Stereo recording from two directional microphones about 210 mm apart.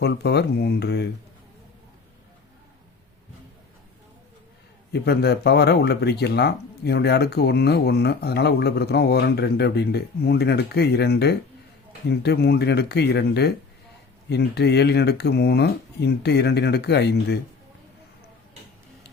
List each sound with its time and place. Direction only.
0.0 s speech: 55° left (ahead or behind)
4.9 s speech: 50° left (ahead or behind)